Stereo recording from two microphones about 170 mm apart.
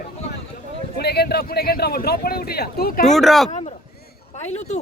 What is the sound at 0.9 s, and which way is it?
Speech, 70° left (ahead or behind).